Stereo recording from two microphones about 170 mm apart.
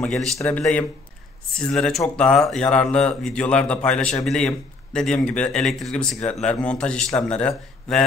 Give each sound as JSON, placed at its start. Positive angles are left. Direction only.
{"t": 0.0, "sound": "speech", "side_deg": 5}